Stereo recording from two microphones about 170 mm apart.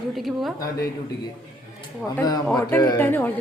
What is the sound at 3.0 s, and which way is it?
Speech, 10° left (ahead or behind).